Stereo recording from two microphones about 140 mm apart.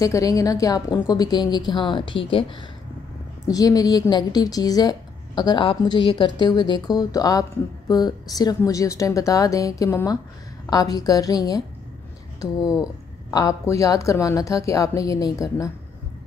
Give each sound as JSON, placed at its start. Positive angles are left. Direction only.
{"t": 0.0, "sound": "a woman's voice", "side_deg": 25}
{"t": 3.4, "sound": "a woman's voice", "side_deg": 25}